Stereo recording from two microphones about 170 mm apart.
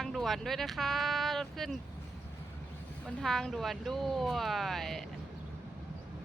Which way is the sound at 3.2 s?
Centre (ahead or behind).